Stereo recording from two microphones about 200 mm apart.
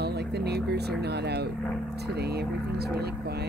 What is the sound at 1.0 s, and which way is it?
Speech, 55° right (ahead or behind).